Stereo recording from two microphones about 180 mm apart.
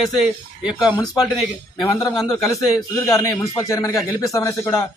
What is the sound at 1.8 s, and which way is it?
A man's voice, 20° left (ahead or behind).